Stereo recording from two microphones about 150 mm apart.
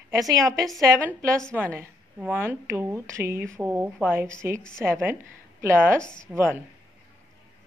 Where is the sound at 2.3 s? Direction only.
15° right (ahead or behind).